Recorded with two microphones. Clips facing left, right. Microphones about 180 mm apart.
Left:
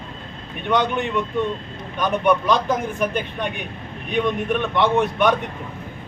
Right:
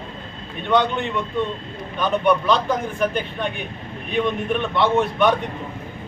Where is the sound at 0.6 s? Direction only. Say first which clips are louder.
Right 1 dB; 15° left (ahead or behind).